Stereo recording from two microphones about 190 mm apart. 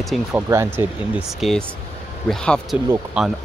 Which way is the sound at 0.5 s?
15° right (ahead or behind).